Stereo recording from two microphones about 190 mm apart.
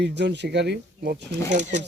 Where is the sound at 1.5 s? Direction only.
40° right (ahead or behind).